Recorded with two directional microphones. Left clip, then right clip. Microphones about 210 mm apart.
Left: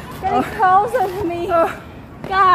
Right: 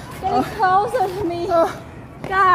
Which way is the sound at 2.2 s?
20° right (ahead or behind).